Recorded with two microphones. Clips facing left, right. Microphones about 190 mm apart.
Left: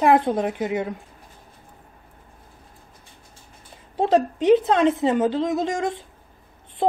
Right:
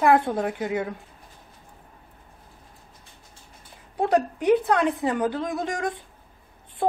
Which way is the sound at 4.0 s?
20° left (ahead or behind).